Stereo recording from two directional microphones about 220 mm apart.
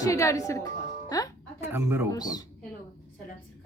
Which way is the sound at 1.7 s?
10° right (ahead or behind).